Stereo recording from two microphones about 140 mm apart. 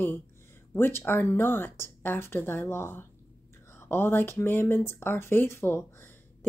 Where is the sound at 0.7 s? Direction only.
15° left (ahead or behind).